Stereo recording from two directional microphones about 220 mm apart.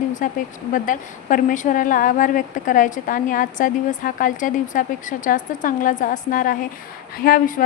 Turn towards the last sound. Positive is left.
turn(degrees=40)  # may be behind; listen again after turning